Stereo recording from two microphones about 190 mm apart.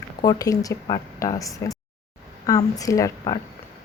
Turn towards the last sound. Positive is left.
turn(degrees=15)  # may be behind; listen again after turning